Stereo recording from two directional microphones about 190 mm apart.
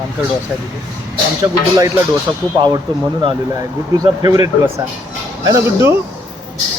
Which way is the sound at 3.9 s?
20° right (ahead or behind).